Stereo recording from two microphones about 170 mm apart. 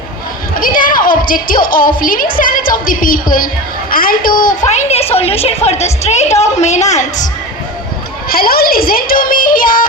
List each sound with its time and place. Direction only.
0.6 s music: 55° left (ahead or behind)
1.6 s a woman's voice: 55° left (ahead or behind)
8.3 s music: 60° left (ahead or behind)